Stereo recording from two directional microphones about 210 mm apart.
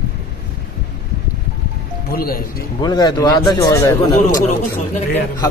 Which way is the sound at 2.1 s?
45° left (ahead or behind).